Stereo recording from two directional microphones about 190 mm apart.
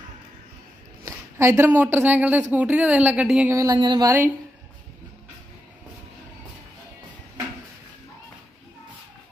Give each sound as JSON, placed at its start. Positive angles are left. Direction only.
{"t": 1.0, "sound": "speech", "side_deg": -15}